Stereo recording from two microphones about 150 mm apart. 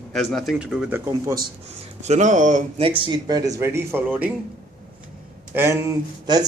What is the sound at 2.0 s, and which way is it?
Speech, 50° right (ahead or behind).